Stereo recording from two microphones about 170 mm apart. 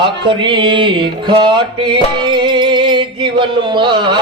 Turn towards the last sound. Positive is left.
turn(degrees=-25)  # may be behind; listen again after turning